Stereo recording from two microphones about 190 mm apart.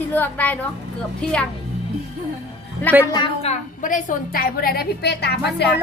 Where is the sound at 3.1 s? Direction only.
30° left (ahead or behind); by 5.8 s 60° left (ahead or behind).